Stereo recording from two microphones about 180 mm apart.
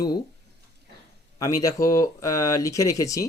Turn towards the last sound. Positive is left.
turn(degrees=20)  # may be behind; listen again after turning